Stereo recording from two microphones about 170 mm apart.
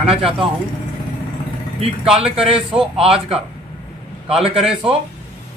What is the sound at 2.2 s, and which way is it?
Speech, 35° right (ahead or behind).